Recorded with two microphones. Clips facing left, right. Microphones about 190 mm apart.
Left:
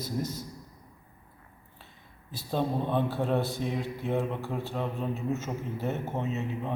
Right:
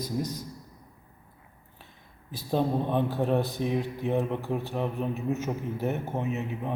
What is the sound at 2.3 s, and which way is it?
Speech, 15° right (ahead or behind).